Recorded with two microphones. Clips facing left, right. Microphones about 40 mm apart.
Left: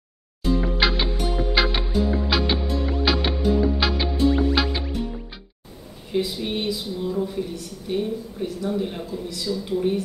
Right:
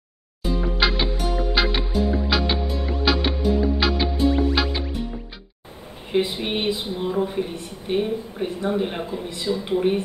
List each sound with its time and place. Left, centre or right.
0.4 s music: centre
6.1 s speech: right